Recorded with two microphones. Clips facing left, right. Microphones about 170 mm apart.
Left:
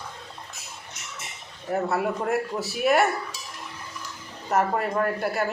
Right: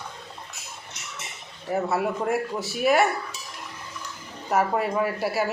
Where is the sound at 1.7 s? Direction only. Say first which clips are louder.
Even; centre (ahead or behind).